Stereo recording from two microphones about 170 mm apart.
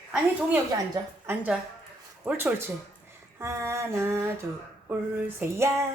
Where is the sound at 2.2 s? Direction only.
10° right (ahead or behind).